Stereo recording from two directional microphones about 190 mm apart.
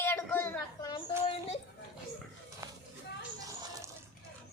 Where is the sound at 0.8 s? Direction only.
20° left (ahead or behind).